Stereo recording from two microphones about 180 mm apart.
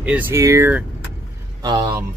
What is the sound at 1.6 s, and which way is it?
Speech, 20° right (ahead or behind).